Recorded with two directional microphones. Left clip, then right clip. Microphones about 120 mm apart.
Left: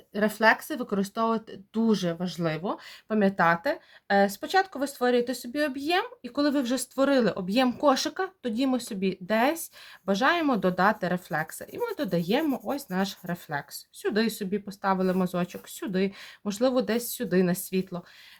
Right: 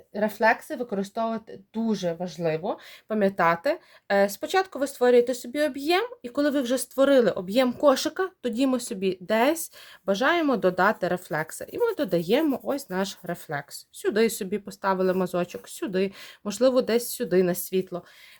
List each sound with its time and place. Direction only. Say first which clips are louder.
0.1 s speech: even; 5° right (ahead or behind)
3.1 s speech: right 1 dB; 25° right (ahead or behind)